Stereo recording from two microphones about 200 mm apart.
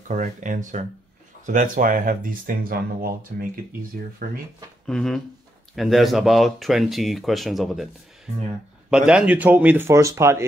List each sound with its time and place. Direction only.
0.1 s speech: 40° right (ahead or behind)
4.8 s speech: 5° left (ahead or behind)
8.9 s speech: 5° right (ahead or behind)